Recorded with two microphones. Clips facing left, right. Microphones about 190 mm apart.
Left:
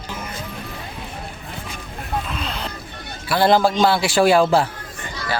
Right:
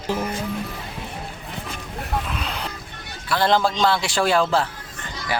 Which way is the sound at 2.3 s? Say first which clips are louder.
Left 1 dB; 10° right (ahead or behind).